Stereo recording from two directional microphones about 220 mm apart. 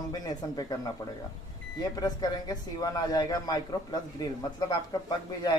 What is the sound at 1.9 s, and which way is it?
A man's voice, 15° left (ahead or behind).